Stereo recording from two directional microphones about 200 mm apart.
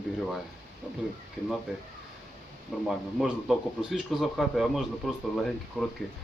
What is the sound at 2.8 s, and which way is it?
Speech, centre (ahead or behind).